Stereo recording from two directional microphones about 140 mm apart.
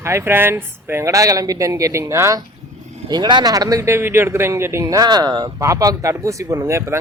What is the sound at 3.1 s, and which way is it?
Speech, 30° right (ahead or behind).